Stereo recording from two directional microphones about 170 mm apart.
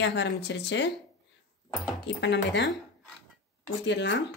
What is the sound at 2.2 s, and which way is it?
Speech, 90° left.